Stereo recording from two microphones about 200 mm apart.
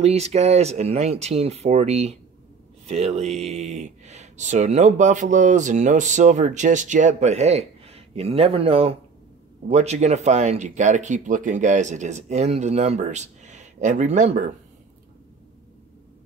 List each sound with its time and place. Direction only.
0.0 s speech: 30° right (ahead or behind)